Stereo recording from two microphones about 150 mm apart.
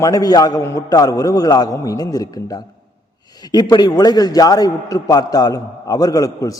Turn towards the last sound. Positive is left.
turn(degrees=25)  # may be behind; listen again after turning